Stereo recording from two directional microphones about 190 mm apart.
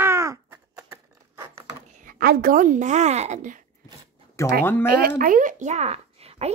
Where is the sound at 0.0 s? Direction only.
15° right (ahead or behind).